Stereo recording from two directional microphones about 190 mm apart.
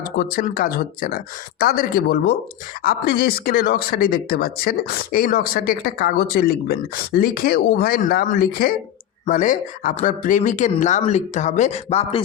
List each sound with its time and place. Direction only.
0.2 s speech: 50° left (ahead or behind); by 12.2 s 35° left (ahead or behind)